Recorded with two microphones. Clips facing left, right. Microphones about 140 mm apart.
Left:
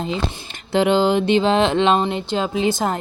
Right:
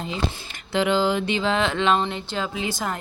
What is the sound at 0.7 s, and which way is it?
Speech, 25° left (ahead or behind).